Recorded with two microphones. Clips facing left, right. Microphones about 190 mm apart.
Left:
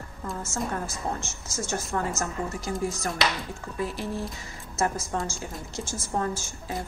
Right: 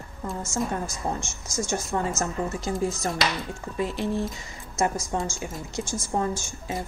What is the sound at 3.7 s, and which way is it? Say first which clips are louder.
A woman's voice: right 4 dB; 20° right (ahead or behind).